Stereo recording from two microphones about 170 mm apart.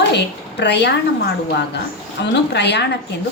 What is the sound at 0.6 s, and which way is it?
Speech, 90° left.